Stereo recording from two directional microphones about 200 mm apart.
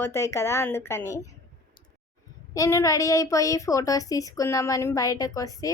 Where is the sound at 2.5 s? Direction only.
15° left (ahead or behind).